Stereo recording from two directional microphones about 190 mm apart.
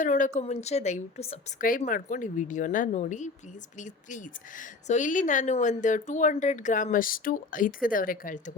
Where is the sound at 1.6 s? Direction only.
45° left (ahead or behind).